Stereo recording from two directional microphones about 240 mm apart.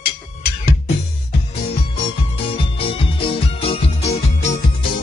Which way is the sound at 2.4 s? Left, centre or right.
Left.